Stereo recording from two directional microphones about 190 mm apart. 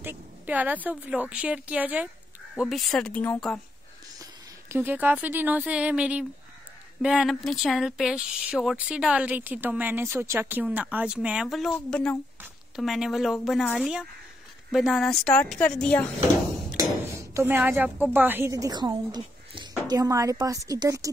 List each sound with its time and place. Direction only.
0.0 s speech: 10° right (ahead or behind)
4.2 s speech: 10° right (ahead or behind); by 16.1 s 5° left (ahead or behind)
16.7 s speech: 15° right (ahead or behind)